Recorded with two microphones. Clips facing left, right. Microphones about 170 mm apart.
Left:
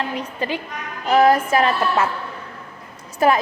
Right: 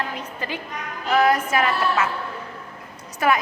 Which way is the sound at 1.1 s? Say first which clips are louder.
Left 4 dB; 30° left (ahead or behind).